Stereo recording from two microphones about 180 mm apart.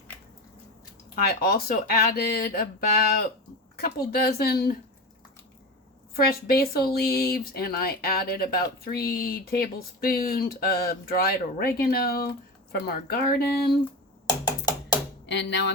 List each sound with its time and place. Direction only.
1.1 s speech: 60° left (ahead or behind)
6.1 s speech: 60° left (ahead or behind)
14.4 s music: 20° left (ahead or behind)
15.3 s speech: 75° left (ahead or behind)